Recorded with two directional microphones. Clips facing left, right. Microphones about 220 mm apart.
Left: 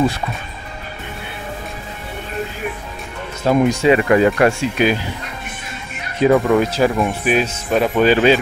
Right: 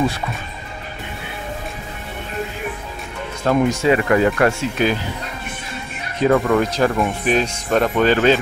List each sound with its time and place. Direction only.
3.4 s speech: 20° left (ahead or behind)
6.2 s speech: 15° left (ahead or behind)